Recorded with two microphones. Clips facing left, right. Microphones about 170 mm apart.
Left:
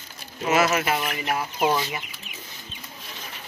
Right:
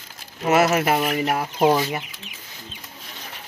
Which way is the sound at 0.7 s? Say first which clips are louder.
Right 4 dB; 40° right (ahead or behind).